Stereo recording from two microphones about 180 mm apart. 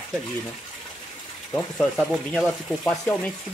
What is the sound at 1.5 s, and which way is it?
Speech, 5° left (ahead or behind).